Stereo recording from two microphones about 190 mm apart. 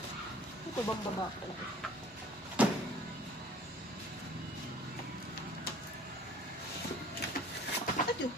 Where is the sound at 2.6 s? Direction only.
5° right (ahead or behind).